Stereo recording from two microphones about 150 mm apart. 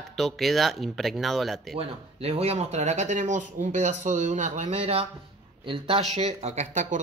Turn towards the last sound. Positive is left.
turn(degrees=-50)  # may be behind; listen again after turning